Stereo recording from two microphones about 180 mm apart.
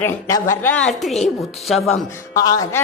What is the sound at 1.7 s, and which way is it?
Speech, centre (ahead or behind).